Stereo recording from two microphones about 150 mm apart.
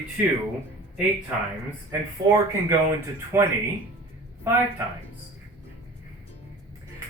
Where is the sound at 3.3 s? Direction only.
15° right (ahead or behind).